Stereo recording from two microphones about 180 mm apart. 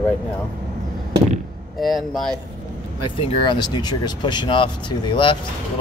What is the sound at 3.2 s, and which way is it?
Speech, 30° left (ahead or behind).